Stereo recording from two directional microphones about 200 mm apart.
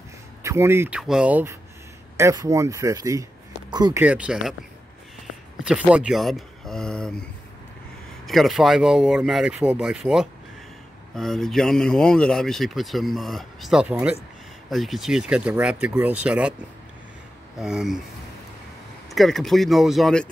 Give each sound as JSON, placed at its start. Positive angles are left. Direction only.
{"t": 0.4, "sound": "speech", "side_deg": -15}
{"t": 4.0, "sound": "speech", "side_deg": -5}
{"t": 5.6, "sound": "speech", "side_deg": -5}
{"t": 8.3, "sound": "speech", "side_deg": 0}
{"t": 17.6, "sound": "speech", "side_deg": -5}
{"t": 19.0, "sound": "speech", "side_deg": 0}